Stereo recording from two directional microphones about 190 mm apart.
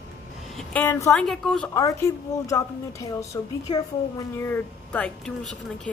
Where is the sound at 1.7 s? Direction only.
15° left (ahead or behind).